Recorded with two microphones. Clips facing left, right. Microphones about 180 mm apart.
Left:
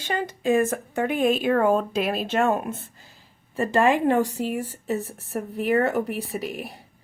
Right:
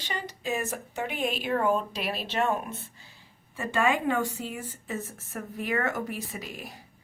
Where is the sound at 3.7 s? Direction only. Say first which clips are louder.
Left 6 dB; 40° left (ahead or behind).